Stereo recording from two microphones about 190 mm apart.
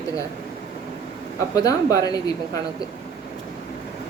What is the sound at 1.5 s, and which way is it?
Speech, 20° left (ahead or behind).